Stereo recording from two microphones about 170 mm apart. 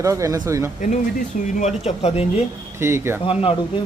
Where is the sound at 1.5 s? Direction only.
40° left (ahead or behind).